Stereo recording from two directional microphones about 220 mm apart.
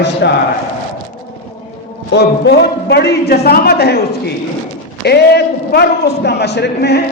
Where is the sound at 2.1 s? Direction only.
50° left (ahead or behind).